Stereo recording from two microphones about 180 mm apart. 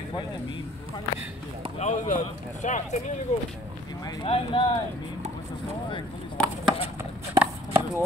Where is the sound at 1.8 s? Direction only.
40° left (ahead or behind).